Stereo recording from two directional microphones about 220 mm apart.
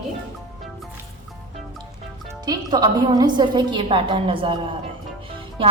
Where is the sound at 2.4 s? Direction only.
20° right (ahead or behind).